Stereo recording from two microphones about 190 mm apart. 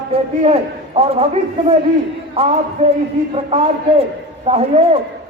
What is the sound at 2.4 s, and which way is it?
A man's voice, 30° right (ahead or behind).